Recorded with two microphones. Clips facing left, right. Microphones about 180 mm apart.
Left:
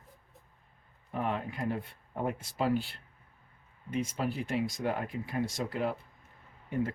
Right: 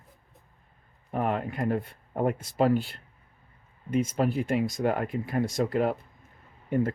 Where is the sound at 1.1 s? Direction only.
55° right (ahead or behind).